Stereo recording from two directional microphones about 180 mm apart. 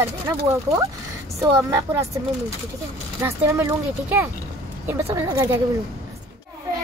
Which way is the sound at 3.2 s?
15° right (ahead or behind).